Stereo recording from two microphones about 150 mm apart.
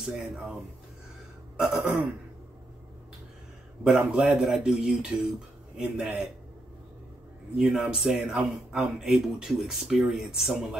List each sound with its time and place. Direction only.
0.0 s a man's voice: 5° right (ahead or behind)
1.6 s a man's voice: centre (ahead or behind)
3.8 s a man's voice: 5° right (ahead or behind)
7.5 s a man's voice: 5° right (ahead or behind)